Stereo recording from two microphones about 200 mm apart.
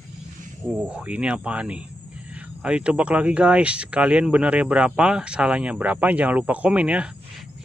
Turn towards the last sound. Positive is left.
turn(degrees=-5)  # may be behind; listen again after turning